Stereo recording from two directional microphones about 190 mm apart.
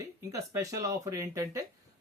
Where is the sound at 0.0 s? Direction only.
15° right (ahead or behind).